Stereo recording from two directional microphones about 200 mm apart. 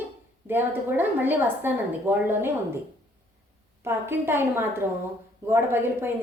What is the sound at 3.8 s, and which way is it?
A woman's voice, 10° right (ahead or behind).